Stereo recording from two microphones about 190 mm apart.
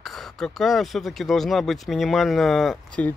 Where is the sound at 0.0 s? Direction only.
Centre (ahead or behind).